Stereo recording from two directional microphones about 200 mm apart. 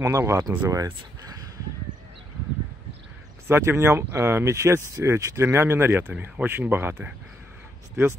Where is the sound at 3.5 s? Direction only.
10° right (ahead or behind).